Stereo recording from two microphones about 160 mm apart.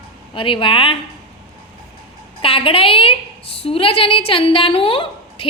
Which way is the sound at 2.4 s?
35° left (ahead or behind).